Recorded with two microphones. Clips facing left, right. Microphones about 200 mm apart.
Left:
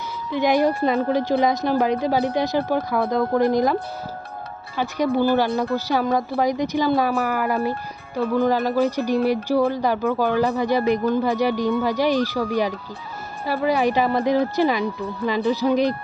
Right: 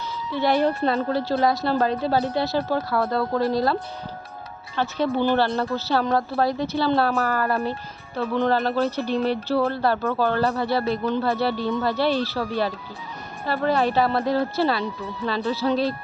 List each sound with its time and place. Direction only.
0.3 s speech: 15° left (ahead or behind)
4.8 s speech: 10° left (ahead or behind)